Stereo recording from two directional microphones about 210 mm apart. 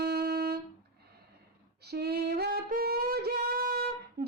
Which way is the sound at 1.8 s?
50° right (ahead or behind).